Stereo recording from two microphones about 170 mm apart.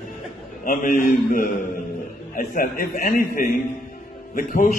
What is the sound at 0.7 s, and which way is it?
A man's voice, 55° left (ahead or behind).